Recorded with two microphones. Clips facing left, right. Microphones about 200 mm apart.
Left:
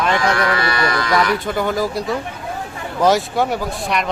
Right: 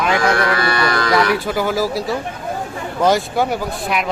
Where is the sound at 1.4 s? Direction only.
5° right (ahead or behind).